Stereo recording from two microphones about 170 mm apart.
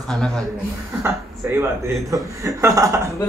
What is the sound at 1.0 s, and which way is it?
A man's voice, 15° right (ahead or behind).